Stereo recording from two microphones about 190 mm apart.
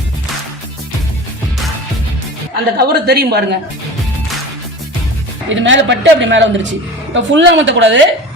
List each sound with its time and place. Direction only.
2.7 s a man's voice: 55° right (ahead or behind)
5.5 s a woman's voice: 80° right